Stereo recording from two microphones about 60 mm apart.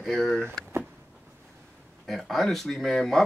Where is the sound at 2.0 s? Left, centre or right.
Centre.